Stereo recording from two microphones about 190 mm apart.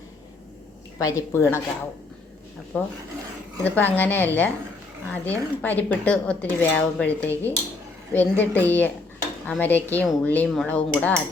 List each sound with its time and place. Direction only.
0.9 s speech: 15° left (ahead or behind)
2.7 s speech: 10° left (ahead or behind)